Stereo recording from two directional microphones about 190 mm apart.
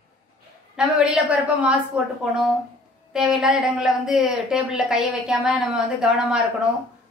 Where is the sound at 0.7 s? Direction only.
5° right (ahead or behind).